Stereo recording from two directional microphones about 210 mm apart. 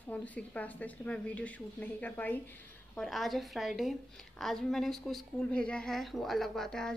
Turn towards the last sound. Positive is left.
turn(degrees=0)  # may be behind; listen again after turning